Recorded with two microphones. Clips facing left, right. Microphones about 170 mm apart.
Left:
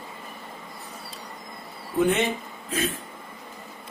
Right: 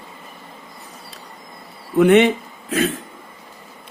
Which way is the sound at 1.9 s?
70° right (ahead or behind).